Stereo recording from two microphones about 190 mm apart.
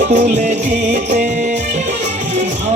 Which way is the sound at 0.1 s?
40° right (ahead or behind).